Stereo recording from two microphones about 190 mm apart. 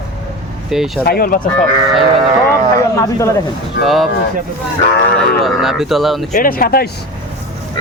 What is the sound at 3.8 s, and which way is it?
Speech, centre (ahead or behind).